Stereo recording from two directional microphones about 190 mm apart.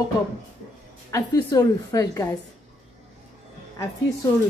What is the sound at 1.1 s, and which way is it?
A woman's voice, 20° left (ahead or behind).